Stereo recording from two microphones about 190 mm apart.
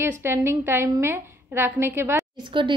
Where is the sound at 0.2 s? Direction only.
15° right (ahead or behind).